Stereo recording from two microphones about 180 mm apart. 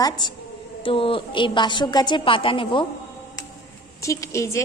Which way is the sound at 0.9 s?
30° left (ahead or behind).